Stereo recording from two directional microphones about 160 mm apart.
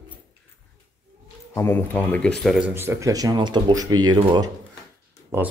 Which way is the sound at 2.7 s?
15° right (ahead or behind).